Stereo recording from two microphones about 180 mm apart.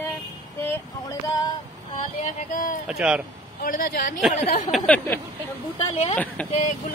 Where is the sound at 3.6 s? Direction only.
55° left (ahead or behind).